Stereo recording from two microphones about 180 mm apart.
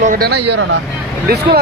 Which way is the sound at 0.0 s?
50° right (ahead or behind).